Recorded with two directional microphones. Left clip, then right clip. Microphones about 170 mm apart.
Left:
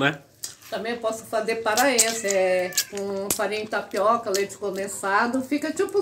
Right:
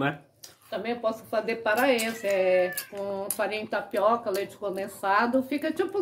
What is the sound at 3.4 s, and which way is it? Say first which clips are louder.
Speech: left 1 dB; 35° right (ahead or behind).